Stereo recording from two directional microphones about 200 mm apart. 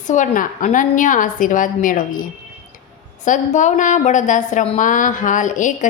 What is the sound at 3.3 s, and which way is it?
A woman's voice, 40° left (ahead or behind).